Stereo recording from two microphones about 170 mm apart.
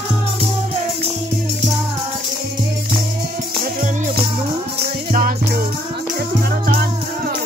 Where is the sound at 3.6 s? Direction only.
55° right (ahead or behind).